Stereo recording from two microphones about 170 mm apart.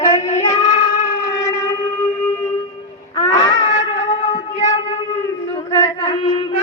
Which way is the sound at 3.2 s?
30° left (ahead or behind).